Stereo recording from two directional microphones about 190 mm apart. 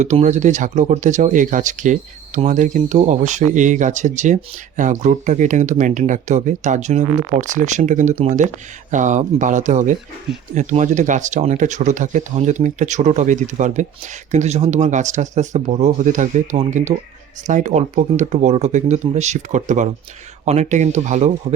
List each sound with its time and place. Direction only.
0.0 s speech: 40° right (ahead or behind)